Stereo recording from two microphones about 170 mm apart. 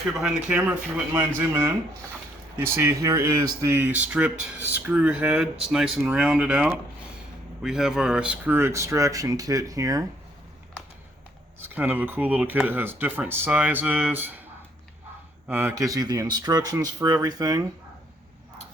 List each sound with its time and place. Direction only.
0.1 s speech: 5° right (ahead or behind); by 10.0 s 20° right (ahead or behind)
11.6 s speech: 10° right (ahead or behind)
15.4 s speech: 15° right (ahead or behind)